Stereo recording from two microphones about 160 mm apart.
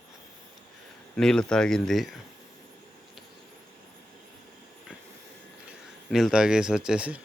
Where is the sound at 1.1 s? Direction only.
5° left (ahead or behind).